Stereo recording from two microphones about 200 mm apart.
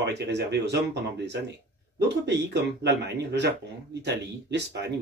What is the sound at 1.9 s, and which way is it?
Speech, 60° right (ahead or behind).